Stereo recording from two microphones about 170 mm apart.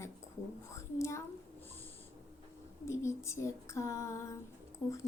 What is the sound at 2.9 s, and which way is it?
A woman's voice, 15° left (ahead or behind).